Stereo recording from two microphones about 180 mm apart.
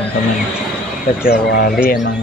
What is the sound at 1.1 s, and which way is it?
Speech, 60° left (ahead or behind).